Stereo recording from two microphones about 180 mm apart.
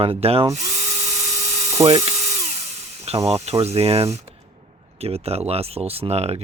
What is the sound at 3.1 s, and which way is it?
Speech, 35° right (ahead or behind).